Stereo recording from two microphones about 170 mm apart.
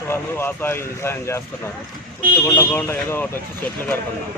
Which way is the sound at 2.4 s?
10° left (ahead or behind).